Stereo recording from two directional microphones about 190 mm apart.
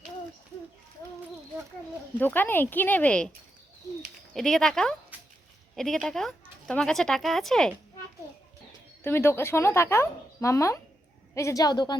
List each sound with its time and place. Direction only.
2.1 s speech: 10° left (ahead or behind)
4.4 s speech: centre (ahead or behind)
9.0 s a woman's voice: 10° left (ahead or behind)